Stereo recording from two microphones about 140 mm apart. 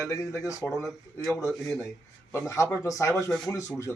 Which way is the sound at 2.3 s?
20° left (ahead or behind).